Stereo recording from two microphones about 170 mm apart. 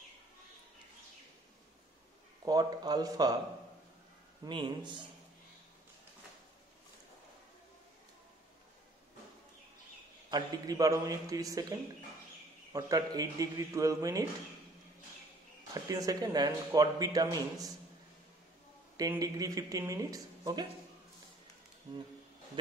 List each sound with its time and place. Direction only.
2.4 s speech: 25° right (ahead or behind)
4.5 s speech: 30° right (ahead or behind)
10.3 s speech: 20° right (ahead or behind)
12.7 s speech: 20° right (ahead or behind)
15.7 s speech: 20° right (ahead or behind)
18.9 s speech: 20° right (ahead or behind)
21.9 s speech: 30° right (ahead or behind)